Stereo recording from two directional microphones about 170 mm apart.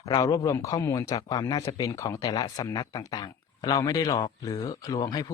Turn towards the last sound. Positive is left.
turn(degrees=20)  # may be behind; listen again after turning